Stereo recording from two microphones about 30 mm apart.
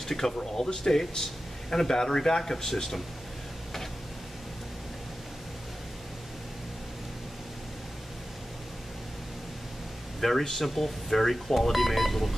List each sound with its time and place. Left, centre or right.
0.0 s speech: centre
10.2 s speech: centre